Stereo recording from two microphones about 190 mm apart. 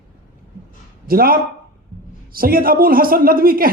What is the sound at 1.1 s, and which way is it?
A man's voice, 50° right (ahead or behind).